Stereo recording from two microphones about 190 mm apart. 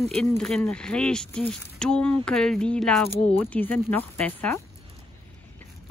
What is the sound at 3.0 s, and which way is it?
Speech, 30° left (ahead or behind).